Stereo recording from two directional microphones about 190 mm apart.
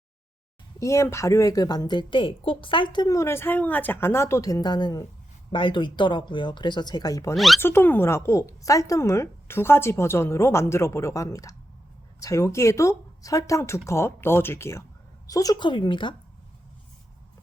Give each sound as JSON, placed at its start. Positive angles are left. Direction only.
{"t": 0.8, "sound": "a woman's voice", "side_deg": 15}
{"t": 7.3, "sound": "speech", "side_deg": 0}
{"t": 7.6, "sound": "a woman's voice", "side_deg": 10}